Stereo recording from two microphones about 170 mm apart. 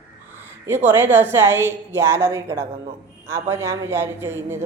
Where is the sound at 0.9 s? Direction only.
15° right (ahead or behind).